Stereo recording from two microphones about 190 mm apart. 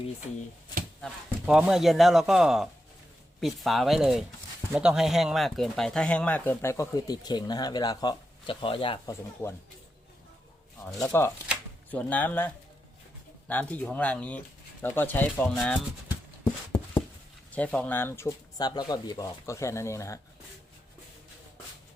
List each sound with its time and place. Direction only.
1.0 s speech: centre (ahead or behind); by 9.1 s 25° left (ahead or behind)
10.9 s speech: 10° left (ahead or behind)
13.5 s speech: 10° left (ahead or behind)
17.5 s speech: 5° left (ahead or behind)